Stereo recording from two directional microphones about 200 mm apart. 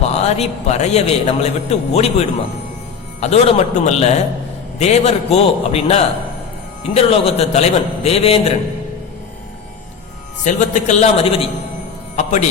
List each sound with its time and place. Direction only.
0.0 s a man's voice: 30° left (ahead or behind)
10.4 s a man's voice: 35° left (ahead or behind)